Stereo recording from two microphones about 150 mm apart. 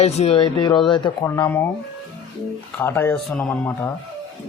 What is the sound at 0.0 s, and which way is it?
Speech, 45° left (ahead or behind).